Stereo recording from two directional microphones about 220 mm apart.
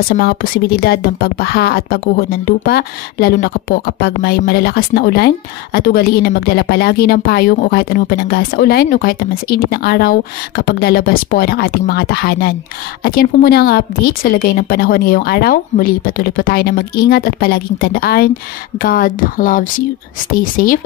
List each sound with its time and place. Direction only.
0.1 s speech: 45° left (ahead or behind)